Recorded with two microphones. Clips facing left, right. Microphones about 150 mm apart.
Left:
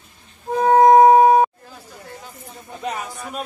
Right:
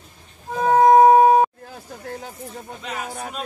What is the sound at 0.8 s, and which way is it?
Wind instrument, 15° left (ahead or behind).